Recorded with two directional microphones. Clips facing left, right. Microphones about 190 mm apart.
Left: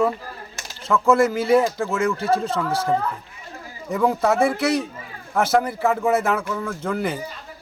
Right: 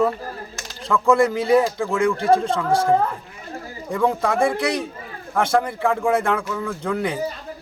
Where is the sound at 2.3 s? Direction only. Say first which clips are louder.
Right 4 dB; 30° right (ahead or behind).